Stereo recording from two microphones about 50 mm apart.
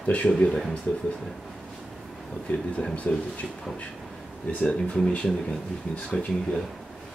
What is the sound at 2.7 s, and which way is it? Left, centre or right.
Speech, left.